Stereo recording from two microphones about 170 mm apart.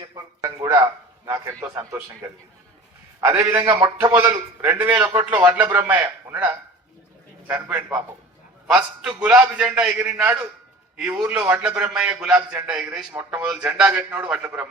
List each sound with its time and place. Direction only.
0.0 s a man's voice: 20° right (ahead or behind)